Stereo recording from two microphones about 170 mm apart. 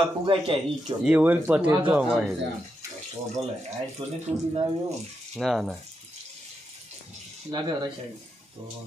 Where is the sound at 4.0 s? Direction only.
30° right (ahead or behind).